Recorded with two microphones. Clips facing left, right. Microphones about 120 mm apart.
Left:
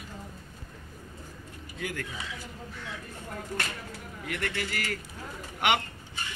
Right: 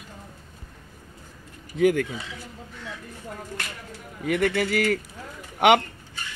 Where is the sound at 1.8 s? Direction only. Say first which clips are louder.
Right 16 dB; 70° right (ahead or behind).